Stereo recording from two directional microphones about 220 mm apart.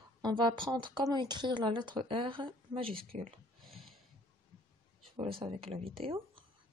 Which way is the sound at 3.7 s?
Centre (ahead or behind).